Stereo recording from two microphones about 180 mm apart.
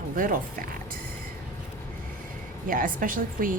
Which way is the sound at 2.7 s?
50° right (ahead or behind).